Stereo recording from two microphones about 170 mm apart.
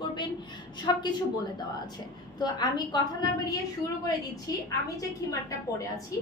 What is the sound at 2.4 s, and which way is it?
A woman's voice, 25° left (ahead or behind).